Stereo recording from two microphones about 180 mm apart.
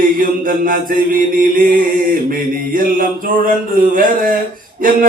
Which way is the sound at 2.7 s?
50° right (ahead or behind).